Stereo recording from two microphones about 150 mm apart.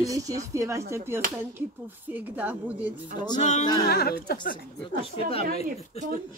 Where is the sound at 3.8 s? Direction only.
90° left.